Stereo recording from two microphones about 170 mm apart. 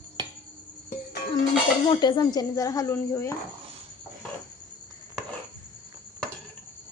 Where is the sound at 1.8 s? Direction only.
25° left (ahead or behind).